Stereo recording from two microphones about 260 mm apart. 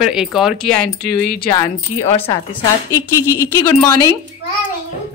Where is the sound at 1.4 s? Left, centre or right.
Centre.